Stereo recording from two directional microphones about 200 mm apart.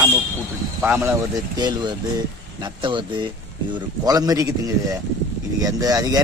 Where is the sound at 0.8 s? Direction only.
15° right (ahead or behind).